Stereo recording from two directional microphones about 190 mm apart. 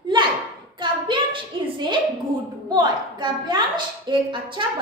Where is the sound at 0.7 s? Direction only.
25° right (ahead or behind).